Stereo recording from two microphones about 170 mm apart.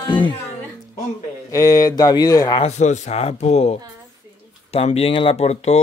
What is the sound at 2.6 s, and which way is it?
A man's voice, 45° left (ahead or behind).